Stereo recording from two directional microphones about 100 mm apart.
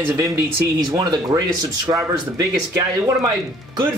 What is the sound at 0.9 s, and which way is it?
Speech, 40° right (ahead or behind).